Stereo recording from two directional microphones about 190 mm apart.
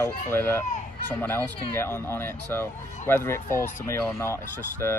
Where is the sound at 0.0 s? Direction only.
10° left (ahead or behind).